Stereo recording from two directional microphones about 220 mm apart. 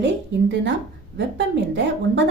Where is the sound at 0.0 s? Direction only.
55° right (ahead or behind).